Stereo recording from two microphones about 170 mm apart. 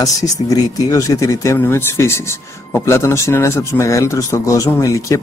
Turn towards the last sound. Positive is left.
turn(degrees=20)  # may be behind; listen again after turning